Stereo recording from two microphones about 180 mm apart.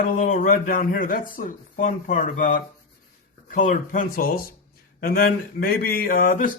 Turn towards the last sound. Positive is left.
turn(degrees=50)  # may be behind; listen again after turning